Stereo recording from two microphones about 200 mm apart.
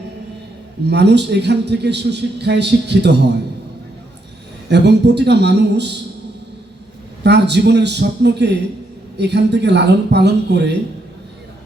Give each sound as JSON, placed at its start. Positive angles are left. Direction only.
{"t": 0.9, "sound": "a man's voice", "side_deg": -55}
{"t": 4.7, "sound": "a man's voice", "side_deg": -55}
{"t": 7.3, "sound": "a man's voice", "side_deg": -55}